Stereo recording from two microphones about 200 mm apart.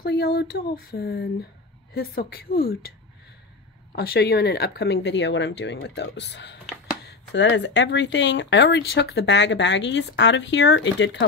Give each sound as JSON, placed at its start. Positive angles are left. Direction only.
{"t": 0.0, "sound": "speech", "side_deg": 50}
{"t": 3.9, "sound": "speech", "side_deg": 50}